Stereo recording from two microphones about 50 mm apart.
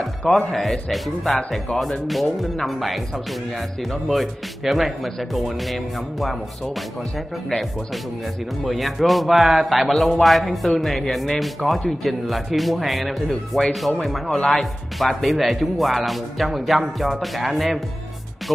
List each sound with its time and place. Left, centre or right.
0.5 s speech: centre
8.6 s speech: centre
14.3 s speech: centre
14.6 s speech: centre